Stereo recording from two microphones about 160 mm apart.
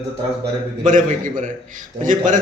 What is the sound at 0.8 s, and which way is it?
Speech, 55° right (ahead or behind).